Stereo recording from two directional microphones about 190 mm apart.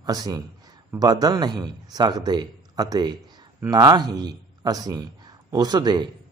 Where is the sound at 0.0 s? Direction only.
20° right (ahead or behind).